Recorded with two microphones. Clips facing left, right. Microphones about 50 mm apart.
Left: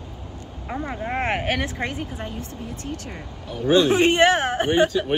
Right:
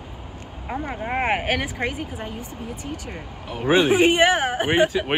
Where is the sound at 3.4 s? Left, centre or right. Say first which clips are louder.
Even; right.